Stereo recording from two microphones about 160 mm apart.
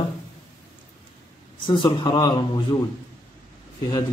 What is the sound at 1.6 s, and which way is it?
Speech, 30° left (ahead or behind).